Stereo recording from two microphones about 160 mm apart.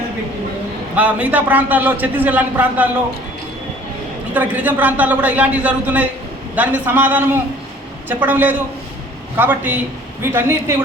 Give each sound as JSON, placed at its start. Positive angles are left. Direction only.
{"t": 0.9, "sound": "a man's voice", "side_deg": -10}
{"t": 4.4, "sound": "a man's voice", "side_deg": -10}